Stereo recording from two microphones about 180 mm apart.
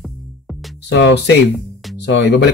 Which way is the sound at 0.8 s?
75° left (ahead or behind).